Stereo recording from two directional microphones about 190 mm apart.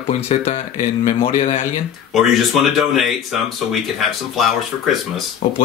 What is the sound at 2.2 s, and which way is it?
Speech, centre (ahead or behind).